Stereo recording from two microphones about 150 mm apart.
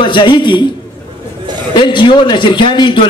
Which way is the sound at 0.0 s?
30° left (ahead or behind).